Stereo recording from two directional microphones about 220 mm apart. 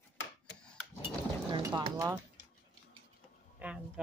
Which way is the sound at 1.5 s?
20° right (ahead or behind).